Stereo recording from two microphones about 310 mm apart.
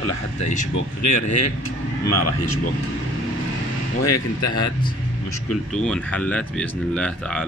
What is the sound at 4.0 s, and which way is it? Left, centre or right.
Speech, left.